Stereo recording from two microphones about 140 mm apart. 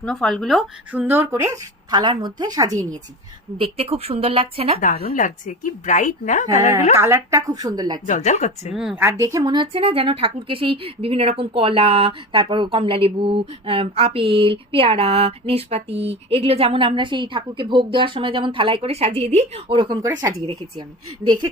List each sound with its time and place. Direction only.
0.0 s a woman's voice: 5° left (ahead or behind)
1.0 s a woman's voice: 15° right (ahead or behind)
3.6 s speech: 45° right (ahead or behind)
4.8 s speech: 80° left; by 6.6 s 60° left (ahead or behind)
6.6 s a woman's voice: 20° right (ahead or behind)
8.0 s speech: 60° left (ahead or behind)
8.7 s a woman's voice: 5° right (ahead or behind)
9.0 s a woman's voice: 20° right (ahead or behind)